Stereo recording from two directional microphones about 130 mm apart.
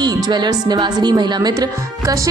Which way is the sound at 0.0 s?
35° right (ahead or behind).